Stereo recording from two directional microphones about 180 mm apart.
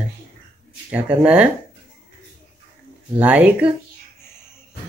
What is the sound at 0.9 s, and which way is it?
Speech, 5° right (ahead or behind).